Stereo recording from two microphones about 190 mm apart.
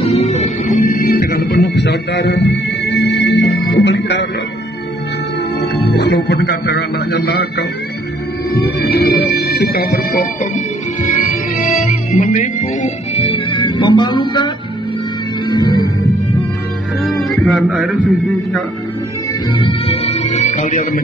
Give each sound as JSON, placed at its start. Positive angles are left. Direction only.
{"t": 0.0, "sound": "music", "side_deg": 35}
{"t": 5.9, "sound": "a man's voice", "side_deg": 60}
{"t": 11.0, "sound": "music", "side_deg": 45}
{"t": 17.2, "sound": "music", "side_deg": 0}
{"t": 19.5, "sound": "music", "side_deg": 30}